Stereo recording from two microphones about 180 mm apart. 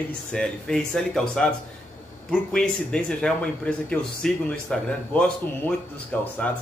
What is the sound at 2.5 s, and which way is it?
A man's voice, 5° left (ahead or behind).